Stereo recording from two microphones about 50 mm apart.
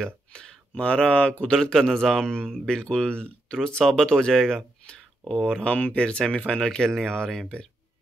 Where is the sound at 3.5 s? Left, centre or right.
Centre.